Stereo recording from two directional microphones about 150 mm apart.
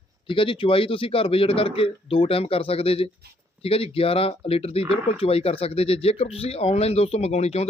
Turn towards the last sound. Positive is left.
turn(degrees=45)  # may be behind; listen again after turning